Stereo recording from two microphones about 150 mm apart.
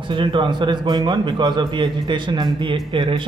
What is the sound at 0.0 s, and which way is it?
A man's voice, 35° right (ahead or behind).